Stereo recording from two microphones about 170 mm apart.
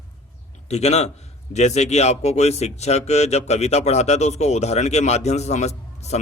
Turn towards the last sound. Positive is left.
turn(degrees=40)  # may be behind; listen again after turning